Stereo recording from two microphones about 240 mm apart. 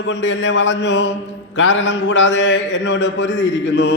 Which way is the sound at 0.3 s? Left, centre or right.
Left.